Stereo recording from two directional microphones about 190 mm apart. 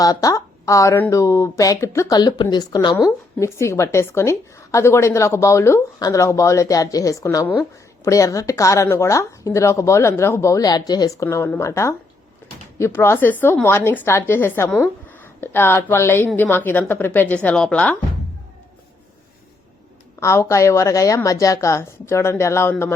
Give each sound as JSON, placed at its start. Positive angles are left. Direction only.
{"t": 0.0, "sound": "speech", "side_deg": 20}
{"t": 20.1, "sound": "speech", "side_deg": 15}